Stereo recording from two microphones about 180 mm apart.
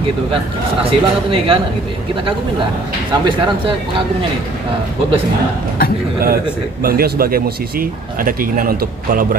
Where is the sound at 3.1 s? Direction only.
25° right (ahead or behind).